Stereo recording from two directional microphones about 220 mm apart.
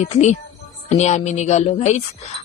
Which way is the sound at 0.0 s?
30° left (ahead or behind).